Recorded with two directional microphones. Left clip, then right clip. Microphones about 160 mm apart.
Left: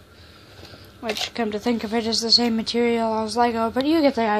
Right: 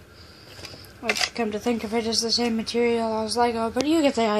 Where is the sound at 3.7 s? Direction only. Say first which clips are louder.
Left 1 dB; 10° left (ahead or behind).